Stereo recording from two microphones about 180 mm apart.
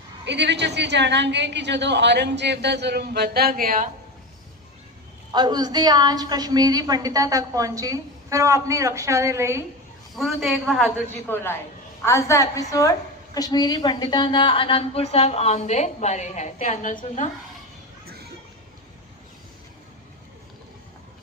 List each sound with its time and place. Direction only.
0.3 s a woman's voice: 70° right (ahead or behind); by 3.8 s 50° right (ahead or behind)
5.3 s a woman's voice: 25° right (ahead or behind)
10.2 s a man's voice: centre (ahead or behind)
11.3 s a woman's voice: 15° left (ahead or behind); by 17.2 s 45° left (ahead or behind)